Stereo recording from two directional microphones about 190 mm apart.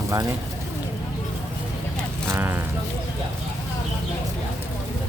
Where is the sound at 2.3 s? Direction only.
10° right (ahead or behind).